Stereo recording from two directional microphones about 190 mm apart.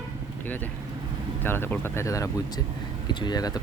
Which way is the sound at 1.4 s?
10° left (ahead or behind).